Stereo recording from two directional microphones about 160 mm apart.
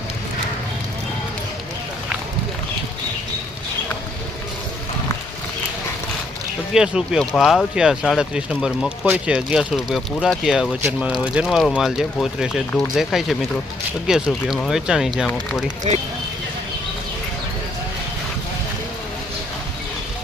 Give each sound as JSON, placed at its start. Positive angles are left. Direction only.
{"t": 6.7, "sound": "speech", "side_deg": -5}
{"t": 15.9, "sound": "speech", "side_deg": -45}